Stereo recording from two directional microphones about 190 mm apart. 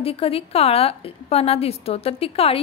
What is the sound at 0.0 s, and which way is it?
A woman's voice, 30° left (ahead or behind).